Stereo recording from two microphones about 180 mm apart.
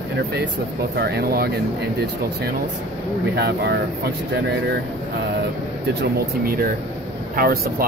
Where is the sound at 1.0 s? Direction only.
60° right (ahead or behind).